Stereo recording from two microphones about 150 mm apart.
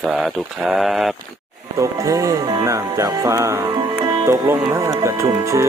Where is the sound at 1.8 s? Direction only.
20° right (ahead or behind).